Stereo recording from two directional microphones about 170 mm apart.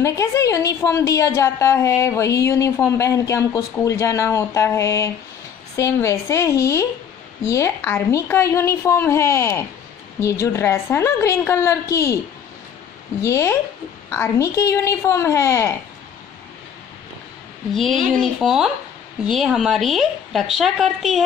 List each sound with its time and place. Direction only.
0.0 s a woman's voice: 20° left (ahead or behind)
13.2 s a woman's voice: 15° left (ahead or behind)
18.4 s speech: centre (ahead or behind)